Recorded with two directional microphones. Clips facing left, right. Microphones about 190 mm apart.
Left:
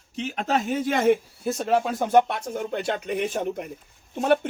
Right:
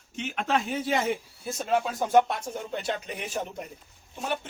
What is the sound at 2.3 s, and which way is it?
Speech, 60° left (ahead or behind).